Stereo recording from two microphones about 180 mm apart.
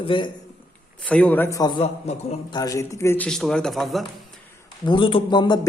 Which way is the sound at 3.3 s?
5° left (ahead or behind).